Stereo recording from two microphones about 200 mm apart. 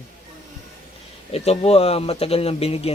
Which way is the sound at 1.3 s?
30° left (ahead or behind).